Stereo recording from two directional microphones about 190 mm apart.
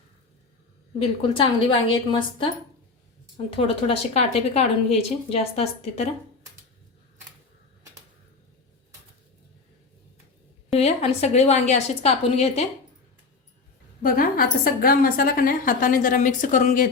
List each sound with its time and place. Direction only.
0.9 s a woman's voice: 25° left (ahead or behind)
10.8 s a woman's voice: 35° left (ahead or behind)
14.0 s a woman's voice: 50° left (ahead or behind)